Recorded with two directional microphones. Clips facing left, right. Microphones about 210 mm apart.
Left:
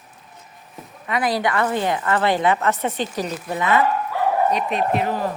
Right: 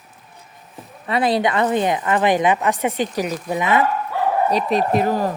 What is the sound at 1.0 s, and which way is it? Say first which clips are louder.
A woman's voice: right 3 dB; 30° right (ahead or behind).